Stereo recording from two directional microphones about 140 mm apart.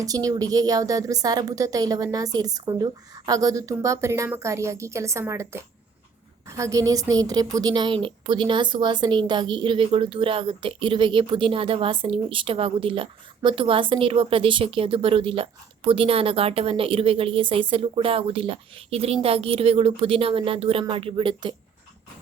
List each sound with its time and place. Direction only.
0.0 s a woman's voice: 25° right (ahead or behind)